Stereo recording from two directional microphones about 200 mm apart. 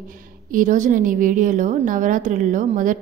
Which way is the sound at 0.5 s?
40° right (ahead or behind).